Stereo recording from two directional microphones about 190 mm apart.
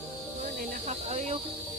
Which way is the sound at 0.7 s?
35° right (ahead or behind).